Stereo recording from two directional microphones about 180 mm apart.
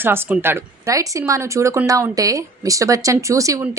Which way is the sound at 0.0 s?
10° right (ahead or behind).